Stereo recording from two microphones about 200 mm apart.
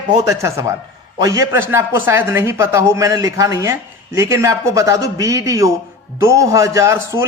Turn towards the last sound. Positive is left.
turn(degrees=-15)  # may be behind; listen again after turning